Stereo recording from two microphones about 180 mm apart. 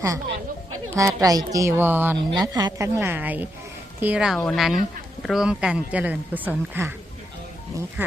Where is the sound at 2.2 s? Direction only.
20° right (ahead or behind).